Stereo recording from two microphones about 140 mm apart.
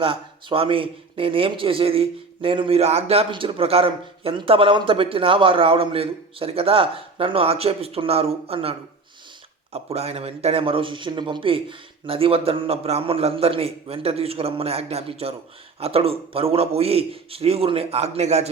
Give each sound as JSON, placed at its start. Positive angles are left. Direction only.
{"t": 0.0, "sound": "a man's voice", "side_deg": -40}
{"t": 9.7, "sound": "speech", "side_deg": -45}